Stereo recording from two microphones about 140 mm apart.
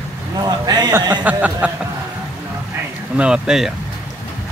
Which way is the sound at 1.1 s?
10° right (ahead or behind).